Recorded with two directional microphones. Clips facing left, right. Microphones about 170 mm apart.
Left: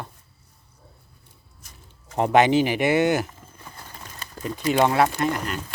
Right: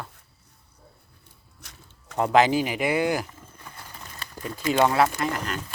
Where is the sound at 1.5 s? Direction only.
70° right (ahead or behind).